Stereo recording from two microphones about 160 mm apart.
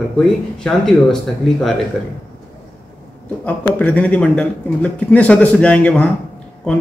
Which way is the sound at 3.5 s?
10° left (ahead or behind).